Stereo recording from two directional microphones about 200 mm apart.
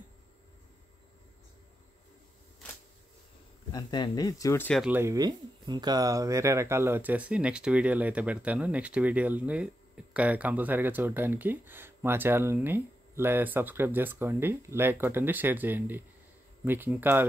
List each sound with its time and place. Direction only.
3.7 s speech: 20° left (ahead or behind)
4.8 s speech: 10° right (ahead or behind)